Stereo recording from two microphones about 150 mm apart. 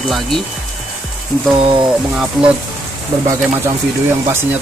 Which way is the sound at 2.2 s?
5° right (ahead or behind).